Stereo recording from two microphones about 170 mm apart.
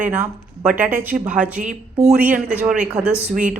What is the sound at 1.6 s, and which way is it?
Speech, 40° right (ahead or behind).